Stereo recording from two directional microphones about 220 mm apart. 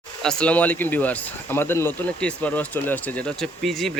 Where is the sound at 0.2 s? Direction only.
5° left (ahead or behind).